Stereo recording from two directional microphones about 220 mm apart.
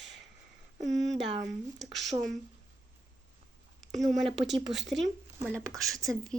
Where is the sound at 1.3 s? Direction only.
15° right (ahead or behind).